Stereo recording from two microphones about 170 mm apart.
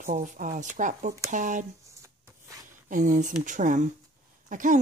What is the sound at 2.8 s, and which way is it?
Speech, 50° right (ahead or behind).